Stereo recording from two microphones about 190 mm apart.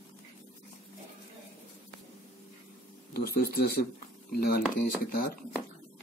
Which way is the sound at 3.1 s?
55° left (ahead or behind).